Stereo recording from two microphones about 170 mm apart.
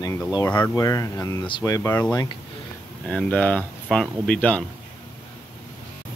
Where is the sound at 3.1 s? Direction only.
5° left (ahead or behind).